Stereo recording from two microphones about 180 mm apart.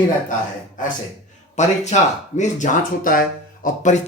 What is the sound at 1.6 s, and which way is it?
Speech, 40° left (ahead or behind).